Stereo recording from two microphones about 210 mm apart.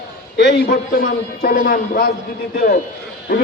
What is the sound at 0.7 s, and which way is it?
A man's voice, 40° left (ahead or behind).